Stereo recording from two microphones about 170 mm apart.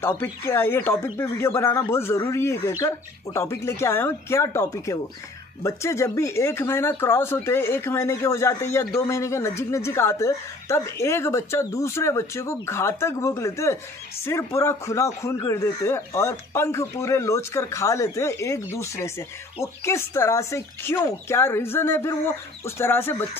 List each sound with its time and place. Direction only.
0.0 s speech: 15° left (ahead or behind)